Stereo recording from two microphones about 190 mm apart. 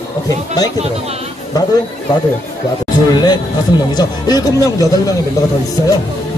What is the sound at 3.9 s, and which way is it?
Speech, 20° left (ahead or behind).